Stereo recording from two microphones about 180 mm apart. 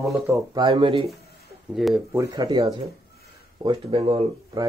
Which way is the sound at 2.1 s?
20° right (ahead or behind).